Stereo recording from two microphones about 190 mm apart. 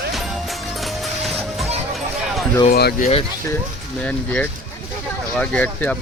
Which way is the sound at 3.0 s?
30° left (ahead or behind).